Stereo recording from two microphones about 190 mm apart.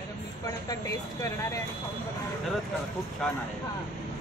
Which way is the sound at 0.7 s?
15° left (ahead or behind).